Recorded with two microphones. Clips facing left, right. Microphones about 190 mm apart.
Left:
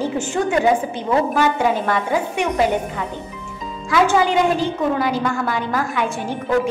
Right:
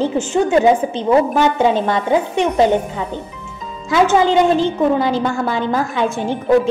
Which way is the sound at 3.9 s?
25° right (ahead or behind).